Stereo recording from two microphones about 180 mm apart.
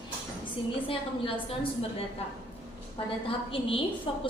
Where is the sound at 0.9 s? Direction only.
30° left (ahead or behind).